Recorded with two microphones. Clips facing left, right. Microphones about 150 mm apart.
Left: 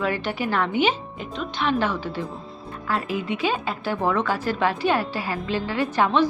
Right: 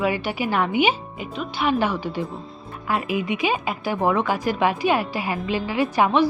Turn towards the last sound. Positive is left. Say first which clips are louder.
# right 2 dB
turn(degrees=-10)  # may be behind; listen again after turning